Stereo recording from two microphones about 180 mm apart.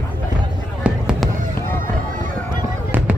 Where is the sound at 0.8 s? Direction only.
5° right (ahead or behind).